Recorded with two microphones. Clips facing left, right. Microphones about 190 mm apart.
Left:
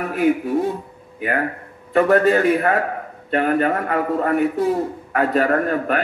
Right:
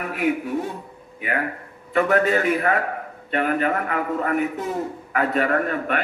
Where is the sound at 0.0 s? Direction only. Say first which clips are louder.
Left 5 dB; 40° left (ahead or behind).